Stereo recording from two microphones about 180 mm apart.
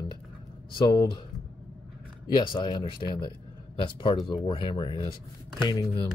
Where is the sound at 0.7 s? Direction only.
25° left (ahead or behind).